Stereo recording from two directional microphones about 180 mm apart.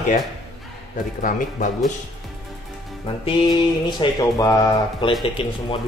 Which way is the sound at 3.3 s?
25° left (ahead or behind).